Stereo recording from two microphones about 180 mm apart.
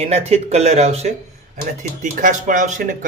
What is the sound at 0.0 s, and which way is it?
A man's voice, 35° right (ahead or behind).